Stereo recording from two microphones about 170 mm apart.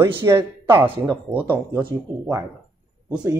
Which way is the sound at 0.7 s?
30° right (ahead or behind).